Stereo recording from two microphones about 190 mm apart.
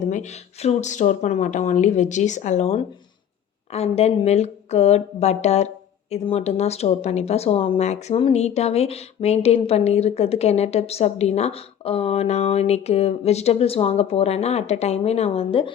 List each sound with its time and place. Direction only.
0.1 s speech: 40° left (ahead or behind)